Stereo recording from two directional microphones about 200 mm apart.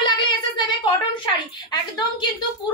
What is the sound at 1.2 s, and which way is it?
Speech, 20° left (ahead or behind).